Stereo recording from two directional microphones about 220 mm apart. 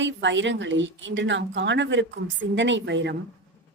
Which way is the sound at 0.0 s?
55° right (ahead or behind).